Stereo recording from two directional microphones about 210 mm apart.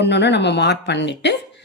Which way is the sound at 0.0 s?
55° left (ahead or behind).